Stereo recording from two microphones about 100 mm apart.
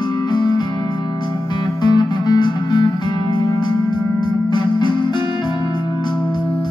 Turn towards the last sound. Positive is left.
turn(degrees=50)  # may be behind; listen again after turning